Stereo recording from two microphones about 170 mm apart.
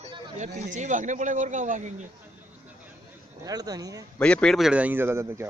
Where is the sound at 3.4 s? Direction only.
20° right (ahead or behind).